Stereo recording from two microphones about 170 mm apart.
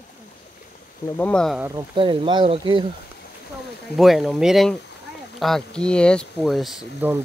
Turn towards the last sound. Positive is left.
turn(degrees=-5)  # may be behind; listen again after turning